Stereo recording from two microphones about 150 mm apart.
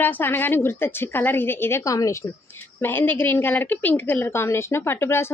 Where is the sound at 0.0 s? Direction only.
15° left (ahead or behind).